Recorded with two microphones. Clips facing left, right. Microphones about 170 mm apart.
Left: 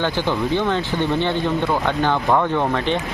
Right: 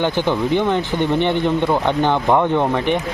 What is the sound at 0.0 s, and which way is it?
Speech, 15° right (ahead or behind).